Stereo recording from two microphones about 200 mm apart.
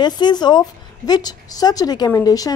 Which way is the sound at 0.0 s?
20° left (ahead or behind).